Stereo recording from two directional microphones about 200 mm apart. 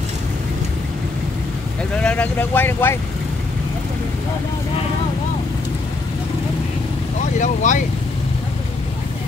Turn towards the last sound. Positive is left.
turn(degrees=40)  # may be behind; listen again after turning